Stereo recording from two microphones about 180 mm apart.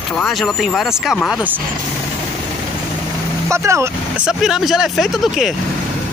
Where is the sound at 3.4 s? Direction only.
15° right (ahead or behind).